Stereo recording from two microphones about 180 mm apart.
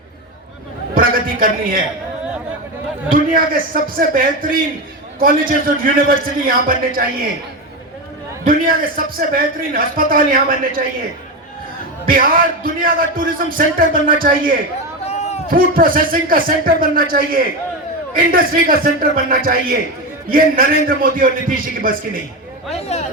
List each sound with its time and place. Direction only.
0.9 s a sound: 50° right (ahead or behind)
3.1 s speech: 50° right (ahead or behind)
8.4 s a man's voice: 50° right (ahead or behind)
12.0 s speech: 50° right (ahead or behind)
15.0 s a sound: 35° left (ahead or behind)
15.4 s speech: 50° right (ahead or behind)
22.7 s speech: 35° left (ahead or behind)